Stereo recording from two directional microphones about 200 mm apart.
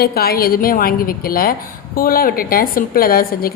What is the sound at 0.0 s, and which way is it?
A woman's voice, 50° left (ahead or behind).